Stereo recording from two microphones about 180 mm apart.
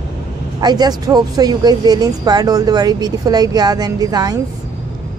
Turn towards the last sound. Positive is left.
turn(degrees=-20)  # may be behind; listen again after turning